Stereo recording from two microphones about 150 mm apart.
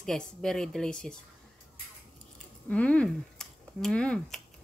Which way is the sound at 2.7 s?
10° left (ahead or behind).